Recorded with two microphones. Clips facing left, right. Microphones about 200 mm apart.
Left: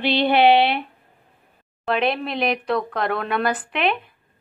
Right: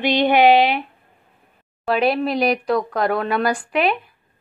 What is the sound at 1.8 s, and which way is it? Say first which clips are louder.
Speech: right 3 dB; 5° right (ahead or behind).